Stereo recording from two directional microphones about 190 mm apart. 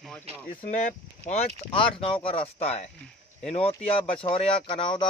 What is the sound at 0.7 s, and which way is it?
Speech, 40° left (ahead or behind).